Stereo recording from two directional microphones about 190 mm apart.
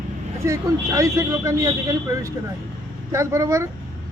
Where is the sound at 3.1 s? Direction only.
15° right (ahead or behind).